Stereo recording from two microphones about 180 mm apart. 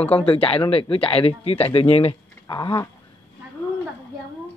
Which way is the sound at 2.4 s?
25° left (ahead or behind).